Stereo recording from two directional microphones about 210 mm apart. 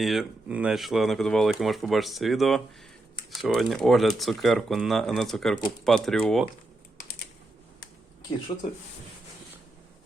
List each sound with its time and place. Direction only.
0.0 s speech: centre (ahead or behind)